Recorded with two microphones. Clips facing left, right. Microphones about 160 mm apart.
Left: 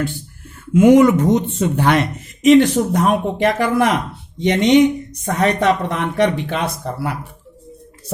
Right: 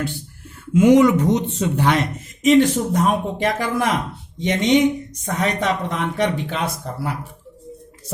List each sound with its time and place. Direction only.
0.7 s speech: 50° left (ahead or behind)